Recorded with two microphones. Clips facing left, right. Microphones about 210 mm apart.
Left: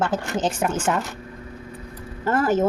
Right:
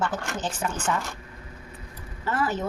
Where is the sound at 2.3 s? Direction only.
45° left (ahead or behind).